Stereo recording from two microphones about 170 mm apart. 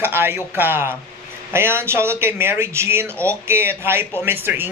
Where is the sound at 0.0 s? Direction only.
15° right (ahead or behind).